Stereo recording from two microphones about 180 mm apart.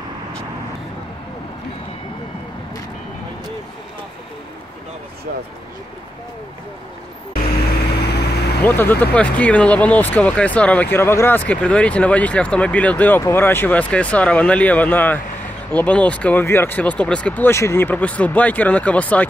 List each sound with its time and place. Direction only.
7.9 s vehicle: 65° left (ahead or behind)
8.6 s speech: 10° left (ahead or behind)